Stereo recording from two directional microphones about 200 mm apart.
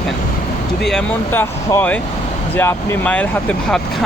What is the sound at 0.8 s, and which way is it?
Speech, 5° left (ahead or behind).